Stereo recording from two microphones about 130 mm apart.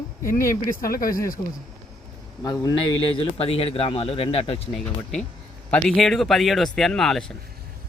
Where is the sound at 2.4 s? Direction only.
30° left (ahead or behind); by 4.7 s 50° left (ahead or behind).